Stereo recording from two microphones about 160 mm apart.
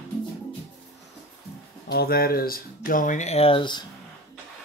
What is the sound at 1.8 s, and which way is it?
Speech, 75° left (ahead or behind).